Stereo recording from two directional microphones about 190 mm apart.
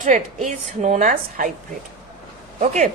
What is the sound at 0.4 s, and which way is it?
A woman's voice, 40° right (ahead or behind).